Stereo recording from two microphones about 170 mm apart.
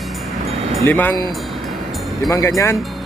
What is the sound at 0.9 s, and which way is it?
Speech, 10° left (ahead or behind).